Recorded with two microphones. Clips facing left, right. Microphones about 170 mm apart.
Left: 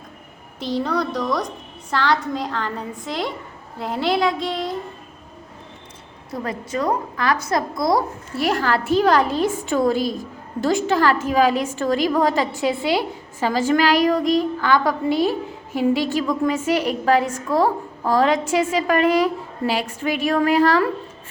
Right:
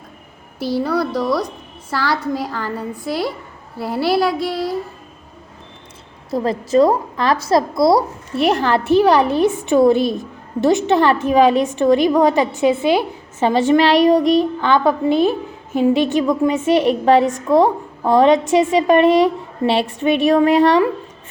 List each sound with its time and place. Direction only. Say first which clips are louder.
0.6 s a woman's voice: right 4 dB; 10° right (ahead or behind)
6.4 s a woman's voice: right 10 dB; 35° right (ahead or behind)